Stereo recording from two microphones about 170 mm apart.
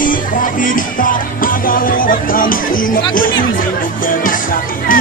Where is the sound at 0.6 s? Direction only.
50° left (ahead or behind).